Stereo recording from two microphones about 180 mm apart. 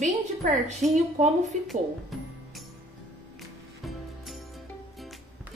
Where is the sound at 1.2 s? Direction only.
40° right (ahead or behind).